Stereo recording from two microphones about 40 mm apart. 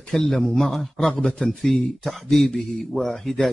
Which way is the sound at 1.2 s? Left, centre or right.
Left.